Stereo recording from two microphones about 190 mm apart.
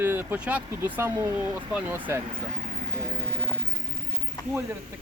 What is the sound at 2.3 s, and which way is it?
Speech, 40° right (ahead or behind).